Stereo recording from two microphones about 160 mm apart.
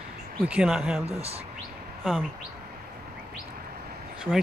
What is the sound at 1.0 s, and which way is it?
Speech, 40° right (ahead or behind).